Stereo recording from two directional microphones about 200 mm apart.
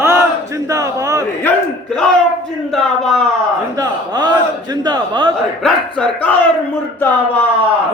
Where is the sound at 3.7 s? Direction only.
20° right (ahead or behind).